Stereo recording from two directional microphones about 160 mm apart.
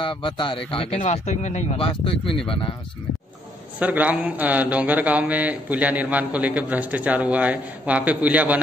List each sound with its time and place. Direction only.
0.0 s speech: 30° left (ahead or behind)
3.8 s a man's voice: 10° right (ahead or behind)